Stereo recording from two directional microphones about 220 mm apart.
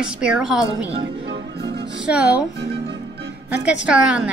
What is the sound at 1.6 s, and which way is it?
Music, 50° right (ahead or behind).